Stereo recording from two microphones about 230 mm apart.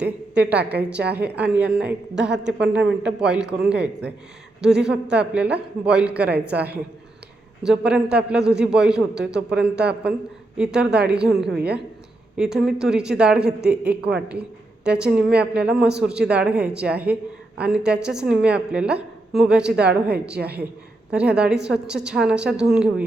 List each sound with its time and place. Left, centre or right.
0.0 s a woman's voice: centre
10.6 s a woman's voice: centre
20.3 s a woman's voice: right
21.1 s a woman's voice: centre